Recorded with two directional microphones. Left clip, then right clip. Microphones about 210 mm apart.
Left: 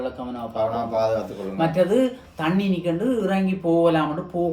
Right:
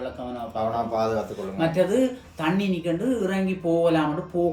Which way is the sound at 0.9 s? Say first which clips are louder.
Left 4 dB; 5° right (ahead or behind).